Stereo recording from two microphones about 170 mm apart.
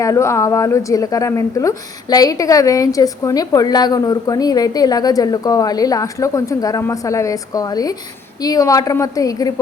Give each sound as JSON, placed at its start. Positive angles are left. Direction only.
{"t": 0.0, "sound": "a woman's voice", "side_deg": 20}